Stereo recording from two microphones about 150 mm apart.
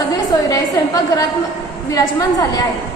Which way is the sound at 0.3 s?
25° left (ahead or behind).